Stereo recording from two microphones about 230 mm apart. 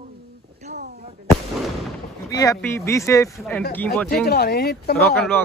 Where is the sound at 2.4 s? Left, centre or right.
Centre.